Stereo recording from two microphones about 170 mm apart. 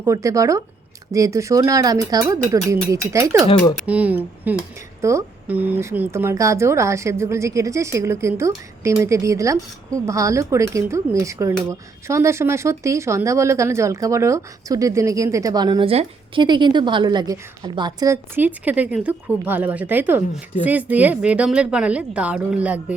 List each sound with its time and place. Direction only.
0.0 s speech: 20° right (ahead or behind)